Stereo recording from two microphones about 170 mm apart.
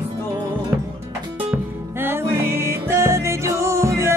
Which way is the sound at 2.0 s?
15° right (ahead or behind).